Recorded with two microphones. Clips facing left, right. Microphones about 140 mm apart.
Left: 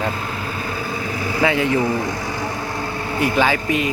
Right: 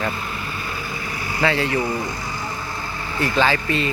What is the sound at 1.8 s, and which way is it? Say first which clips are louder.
Speech: left 4 dB; 90° left.